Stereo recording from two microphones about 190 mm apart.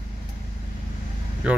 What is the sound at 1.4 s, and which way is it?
Speech, 5° right (ahead or behind).